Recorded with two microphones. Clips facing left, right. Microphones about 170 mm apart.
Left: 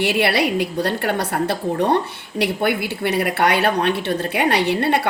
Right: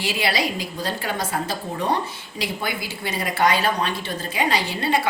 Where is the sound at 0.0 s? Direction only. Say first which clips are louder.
Left 6 dB; 65° left (ahead or behind).